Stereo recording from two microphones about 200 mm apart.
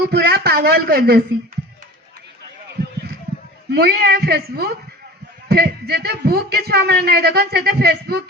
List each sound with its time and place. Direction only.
0.0 s a man's voice: 50° right (ahead or behind)
3.7 s a man's voice: 55° right (ahead or behind)